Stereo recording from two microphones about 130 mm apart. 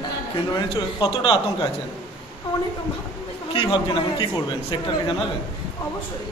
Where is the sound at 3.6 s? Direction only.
40° left (ahead or behind).